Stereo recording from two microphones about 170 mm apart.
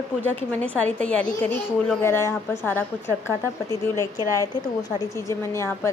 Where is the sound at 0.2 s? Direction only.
10° left (ahead or behind).